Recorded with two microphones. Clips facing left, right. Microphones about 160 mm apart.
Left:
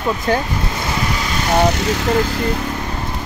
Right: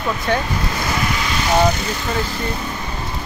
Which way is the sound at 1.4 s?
65° left (ahead or behind).